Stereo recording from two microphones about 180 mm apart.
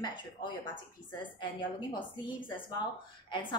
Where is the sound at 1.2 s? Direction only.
25° left (ahead or behind).